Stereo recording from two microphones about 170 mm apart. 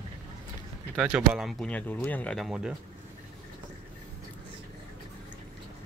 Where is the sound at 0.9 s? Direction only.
5° right (ahead or behind).